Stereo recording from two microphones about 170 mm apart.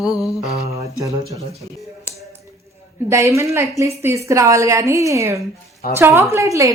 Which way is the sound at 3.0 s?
15° right (ahead or behind).